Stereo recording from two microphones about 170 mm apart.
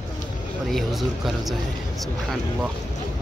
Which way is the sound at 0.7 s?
Centre (ahead or behind).